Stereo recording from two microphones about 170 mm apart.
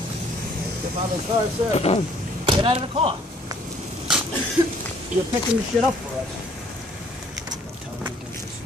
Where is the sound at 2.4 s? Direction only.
30° right (ahead or behind).